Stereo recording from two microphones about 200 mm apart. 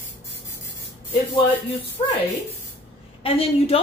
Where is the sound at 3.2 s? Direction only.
30° left (ahead or behind).